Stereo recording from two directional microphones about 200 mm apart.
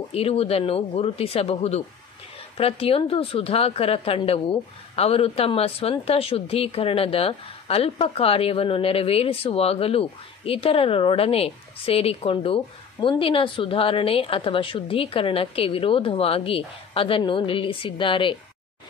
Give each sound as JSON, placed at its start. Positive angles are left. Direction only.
{"t": 0.1, "sound": "a woman's voice", "side_deg": 30}